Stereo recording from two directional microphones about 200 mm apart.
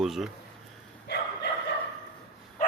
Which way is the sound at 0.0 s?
Centre (ahead or behind).